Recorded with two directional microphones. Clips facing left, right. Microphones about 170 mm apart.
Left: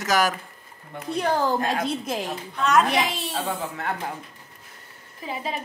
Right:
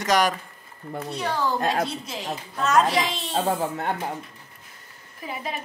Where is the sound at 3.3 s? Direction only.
35° right (ahead or behind).